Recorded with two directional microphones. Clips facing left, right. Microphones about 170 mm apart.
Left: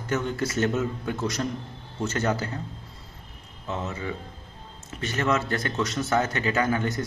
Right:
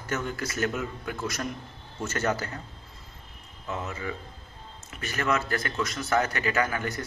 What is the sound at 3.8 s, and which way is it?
Speech, 20° left (ahead or behind).